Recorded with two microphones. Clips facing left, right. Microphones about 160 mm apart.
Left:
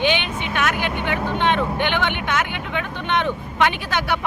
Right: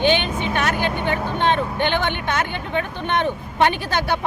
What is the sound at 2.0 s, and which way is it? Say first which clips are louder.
Speech: even; 35° right (ahead or behind).